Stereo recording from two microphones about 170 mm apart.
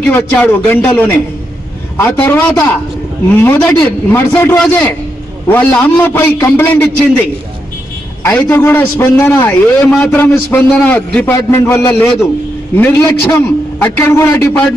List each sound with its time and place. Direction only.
0.0 s a man's voice: 10° left (ahead or behind)
8.3 s a man's voice: 10° left (ahead or behind)